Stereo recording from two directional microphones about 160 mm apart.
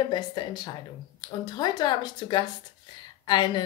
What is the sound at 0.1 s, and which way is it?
A woman's voice, 25° left (ahead or behind).